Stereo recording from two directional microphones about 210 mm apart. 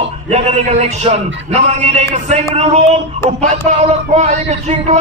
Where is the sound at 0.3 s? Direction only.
30° right (ahead or behind).